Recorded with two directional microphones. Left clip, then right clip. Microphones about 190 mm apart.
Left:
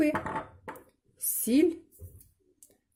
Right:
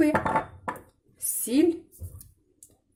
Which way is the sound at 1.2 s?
45° left (ahead or behind).